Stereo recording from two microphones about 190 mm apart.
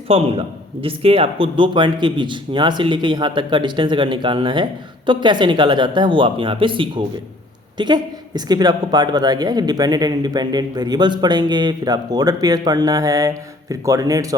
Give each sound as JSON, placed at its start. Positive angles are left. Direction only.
{"t": 0.1, "sound": "a man's voice", "side_deg": -30}